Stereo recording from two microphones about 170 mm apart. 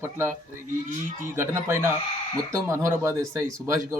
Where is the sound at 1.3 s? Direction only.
15° right (ahead or behind).